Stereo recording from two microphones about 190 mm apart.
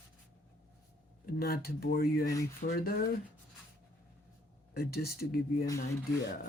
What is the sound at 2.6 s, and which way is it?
Speech, 50° left (ahead or behind).